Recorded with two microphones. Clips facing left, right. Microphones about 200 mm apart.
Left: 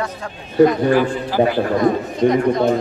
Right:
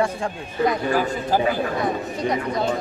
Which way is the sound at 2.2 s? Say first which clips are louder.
Left 10 dB; 50° left (ahead or behind).